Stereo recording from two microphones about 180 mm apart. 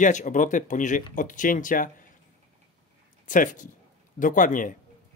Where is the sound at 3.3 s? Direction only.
45° left (ahead or behind).